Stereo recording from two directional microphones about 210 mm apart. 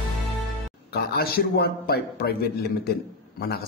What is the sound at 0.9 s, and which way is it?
A man's voice, 50° left (ahead or behind).